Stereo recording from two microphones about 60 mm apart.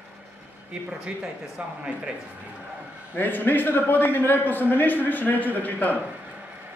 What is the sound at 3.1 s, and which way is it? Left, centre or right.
A man's voice, left.